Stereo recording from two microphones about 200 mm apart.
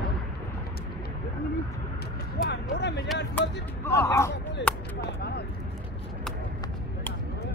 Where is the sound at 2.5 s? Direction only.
60° left (ahead or behind).